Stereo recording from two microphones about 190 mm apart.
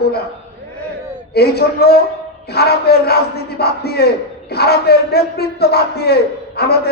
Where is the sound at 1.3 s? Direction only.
55° left (ahead or behind).